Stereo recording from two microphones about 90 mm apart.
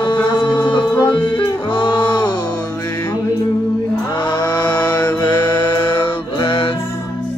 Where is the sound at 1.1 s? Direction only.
60° left (ahead or behind).